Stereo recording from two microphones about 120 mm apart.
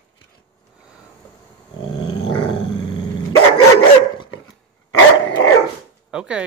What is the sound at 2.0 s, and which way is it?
Dog, 45° left (ahead or behind).